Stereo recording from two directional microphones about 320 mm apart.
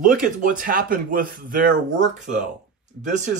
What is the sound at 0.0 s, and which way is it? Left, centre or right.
Speech, right.